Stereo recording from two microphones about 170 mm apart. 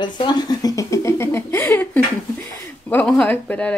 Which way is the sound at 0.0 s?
25° left (ahead or behind).